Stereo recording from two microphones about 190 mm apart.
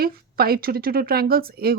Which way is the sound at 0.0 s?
55° right (ahead or behind).